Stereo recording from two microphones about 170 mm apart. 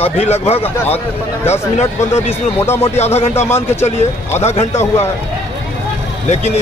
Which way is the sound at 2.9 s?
40° left (ahead or behind).